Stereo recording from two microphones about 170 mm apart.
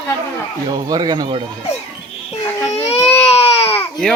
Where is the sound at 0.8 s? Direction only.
25° right (ahead or behind).